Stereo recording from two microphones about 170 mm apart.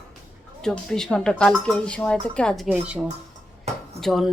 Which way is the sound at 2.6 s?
5° right (ahead or behind).